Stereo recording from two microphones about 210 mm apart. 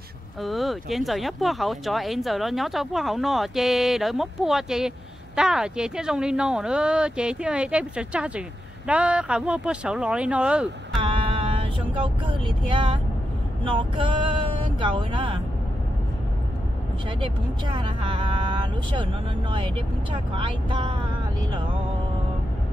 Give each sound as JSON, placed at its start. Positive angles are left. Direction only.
{"t": 0.4, "sound": "speech", "side_deg": 0}
{"t": 11.0, "sound": "vehicle", "side_deg": -25}
{"t": 13.7, "sound": "speech", "side_deg": -25}
{"t": 17.2, "sound": "speech", "side_deg": -20}